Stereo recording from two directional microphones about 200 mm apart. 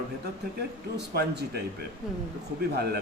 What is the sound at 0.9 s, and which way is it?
Speech, 55° right (ahead or behind).